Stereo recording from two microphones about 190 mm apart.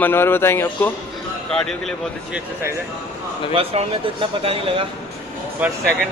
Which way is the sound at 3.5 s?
30° right (ahead or behind).